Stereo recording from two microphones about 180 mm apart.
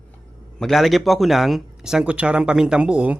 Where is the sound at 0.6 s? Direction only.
Centre (ahead or behind).